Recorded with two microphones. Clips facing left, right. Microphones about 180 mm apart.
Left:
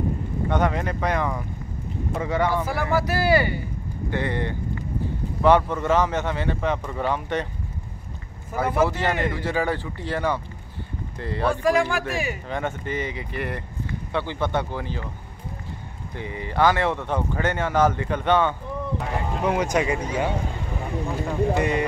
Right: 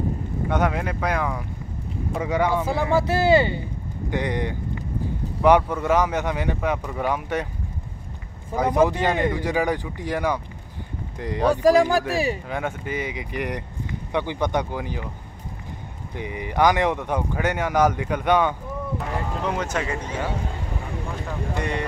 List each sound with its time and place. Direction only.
0.5 s speech: 5° right (ahead or behind)
2.6 s speech: 25° right (ahead or behind)
8.5 s speech: 15° right (ahead or behind)
11.5 s speech: 40° right (ahead or behind)
12.4 s speech: 5° right (ahead or behind)
16.2 s speech: 15° right (ahead or behind)
19.4 s speech: 10° left (ahead or behind)
21.3 s speech: 5° left (ahead or behind)